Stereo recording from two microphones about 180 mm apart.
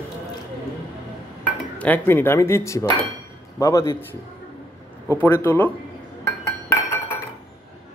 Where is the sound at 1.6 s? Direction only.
10° left (ahead or behind).